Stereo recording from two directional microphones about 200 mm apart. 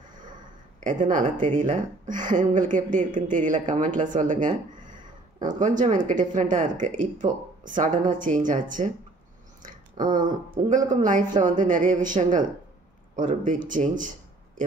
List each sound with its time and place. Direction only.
0.7 s speech: 40° right (ahead or behind)
9.6 s a sound: 40° right (ahead or behind)
10.7 s speech: 40° right (ahead or behind)